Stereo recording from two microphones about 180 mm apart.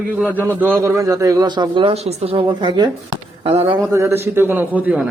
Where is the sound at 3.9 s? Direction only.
15° right (ahead or behind).